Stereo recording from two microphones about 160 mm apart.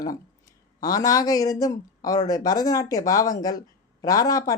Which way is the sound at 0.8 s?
25° left (ahead or behind).